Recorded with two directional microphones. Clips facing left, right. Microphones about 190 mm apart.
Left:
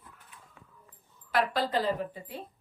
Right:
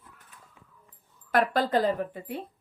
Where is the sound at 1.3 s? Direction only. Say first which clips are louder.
Right 4 dB; 45° right (ahead or behind).